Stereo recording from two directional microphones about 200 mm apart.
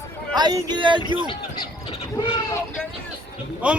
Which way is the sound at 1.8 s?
25° left (ahead or behind).